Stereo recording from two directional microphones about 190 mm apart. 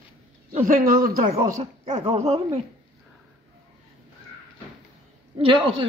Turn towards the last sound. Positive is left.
turn(degrees=-30)  # may be behind; listen again after turning